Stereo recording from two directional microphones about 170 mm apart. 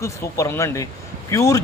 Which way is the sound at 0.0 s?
15° left (ahead or behind).